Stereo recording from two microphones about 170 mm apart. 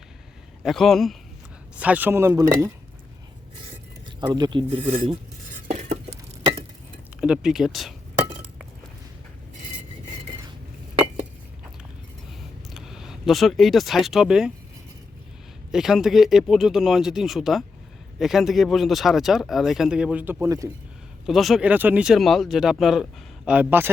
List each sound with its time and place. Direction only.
0.6 s speech: centre (ahead or behind); by 2.7 s 15° right (ahead or behind)
4.2 s speech: 25° right (ahead or behind)
5.6 s stir: 40° right (ahead or behind)
7.2 s speech: 5° right (ahead or behind)
12.7 s speech: centre (ahead or behind)
15.7 s speech: 5° right (ahead or behind); by 20.7 s 20° right (ahead or behind)
21.2 s speech: centre (ahead or behind)